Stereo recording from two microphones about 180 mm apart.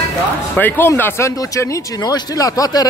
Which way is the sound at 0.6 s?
10° left (ahead or behind).